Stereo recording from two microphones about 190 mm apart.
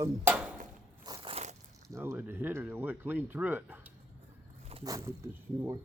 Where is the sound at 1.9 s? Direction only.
15° right (ahead or behind).